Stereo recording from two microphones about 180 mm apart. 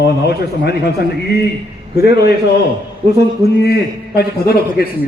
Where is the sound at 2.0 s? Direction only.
65° left (ahead or behind).